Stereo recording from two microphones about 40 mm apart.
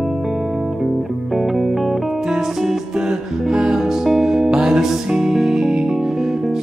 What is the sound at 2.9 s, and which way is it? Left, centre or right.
Music, right.